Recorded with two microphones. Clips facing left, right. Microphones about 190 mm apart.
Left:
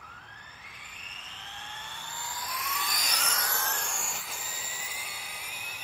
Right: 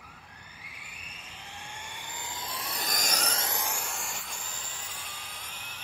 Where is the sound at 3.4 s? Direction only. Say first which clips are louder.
Right 1 dB; 20° right (ahead or behind).